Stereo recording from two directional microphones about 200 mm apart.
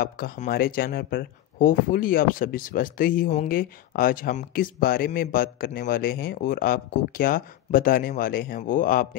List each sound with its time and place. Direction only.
0.0 s speech: 45° left (ahead or behind)